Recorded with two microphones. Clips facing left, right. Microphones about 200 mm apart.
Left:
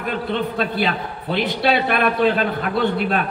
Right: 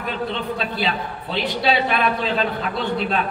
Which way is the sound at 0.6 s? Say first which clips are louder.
Left 3 dB; 55° left (ahead or behind).